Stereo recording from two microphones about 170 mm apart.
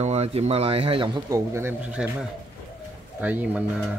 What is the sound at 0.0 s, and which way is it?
Speech, 40° right (ahead or behind).